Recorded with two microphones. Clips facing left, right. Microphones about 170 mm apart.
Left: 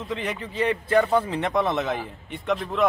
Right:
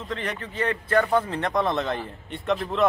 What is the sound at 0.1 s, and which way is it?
A man's voice, 10° left (ahead or behind).